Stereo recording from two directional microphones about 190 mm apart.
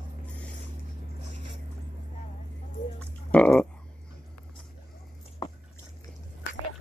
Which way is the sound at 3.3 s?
5° left (ahead or behind).